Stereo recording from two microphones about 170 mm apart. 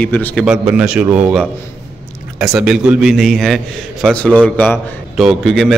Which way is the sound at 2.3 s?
5° right (ahead or behind).